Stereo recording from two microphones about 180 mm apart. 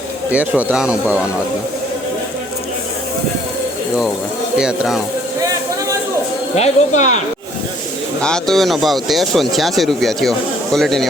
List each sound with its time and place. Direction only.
0.3 s speech: 10° right (ahead or behind)
4.5 s speech: 5° right (ahead or behind)
6.6 s speech: 40° left (ahead or behind)
8.2 s speech: 5° left (ahead or behind)